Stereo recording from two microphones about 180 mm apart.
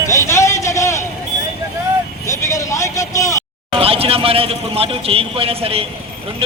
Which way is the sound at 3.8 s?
30° right (ahead or behind).